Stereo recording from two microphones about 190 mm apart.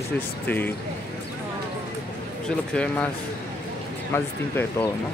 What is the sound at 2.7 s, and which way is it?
Speech, 5° left (ahead or behind).